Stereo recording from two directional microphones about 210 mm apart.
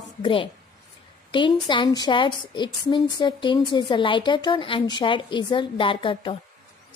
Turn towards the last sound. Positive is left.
turn(degrees=25)  # may be behind; listen again after turning